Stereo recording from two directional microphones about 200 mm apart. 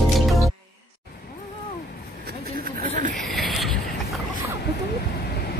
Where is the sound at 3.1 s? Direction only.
Centre (ahead or behind).